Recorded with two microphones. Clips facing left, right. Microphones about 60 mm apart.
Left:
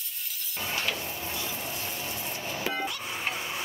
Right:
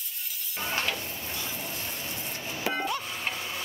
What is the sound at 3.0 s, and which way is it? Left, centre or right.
Music, centre.